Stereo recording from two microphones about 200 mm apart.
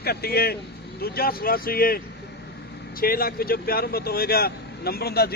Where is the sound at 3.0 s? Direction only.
50° left (ahead or behind).